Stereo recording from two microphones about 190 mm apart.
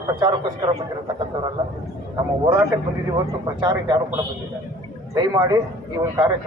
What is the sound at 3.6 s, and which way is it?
Speech, 20° right (ahead or behind).